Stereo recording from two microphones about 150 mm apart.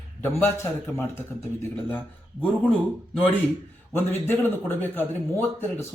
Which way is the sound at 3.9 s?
15° left (ahead or behind).